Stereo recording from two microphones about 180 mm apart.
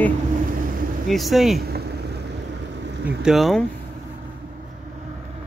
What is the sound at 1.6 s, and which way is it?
Vehicle, 60° right (ahead or behind).